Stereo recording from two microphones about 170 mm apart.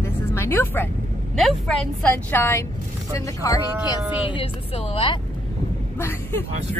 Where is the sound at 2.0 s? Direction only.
10° left (ahead or behind).